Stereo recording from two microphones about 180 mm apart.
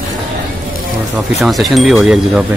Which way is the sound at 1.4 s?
Centre (ahead or behind).